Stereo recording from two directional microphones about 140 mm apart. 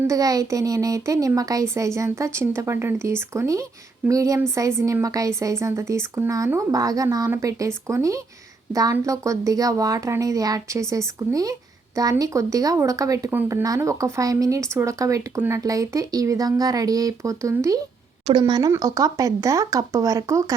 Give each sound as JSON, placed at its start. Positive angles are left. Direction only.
{"t": 0.0, "sound": "speech", "side_deg": -25}